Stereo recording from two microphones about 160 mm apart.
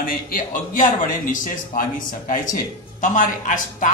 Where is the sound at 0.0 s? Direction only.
55° left (ahead or behind).